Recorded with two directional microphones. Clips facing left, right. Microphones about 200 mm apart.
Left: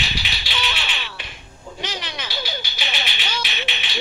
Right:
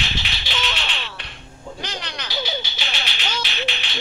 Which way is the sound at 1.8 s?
Centre (ahead or behind).